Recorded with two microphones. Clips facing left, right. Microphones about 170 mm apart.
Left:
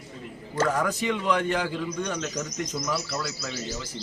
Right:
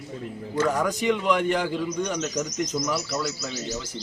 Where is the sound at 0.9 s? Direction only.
Centre (ahead or behind).